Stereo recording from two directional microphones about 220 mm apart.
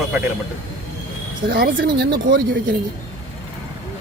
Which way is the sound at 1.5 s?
45° right (ahead or behind).